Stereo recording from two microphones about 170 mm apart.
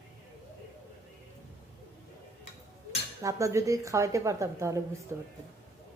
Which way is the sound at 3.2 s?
20° right (ahead or behind).